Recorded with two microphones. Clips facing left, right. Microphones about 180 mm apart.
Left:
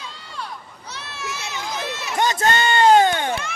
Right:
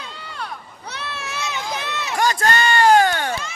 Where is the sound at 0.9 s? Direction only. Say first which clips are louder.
Right 2 dB; 60° right (ahead or behind).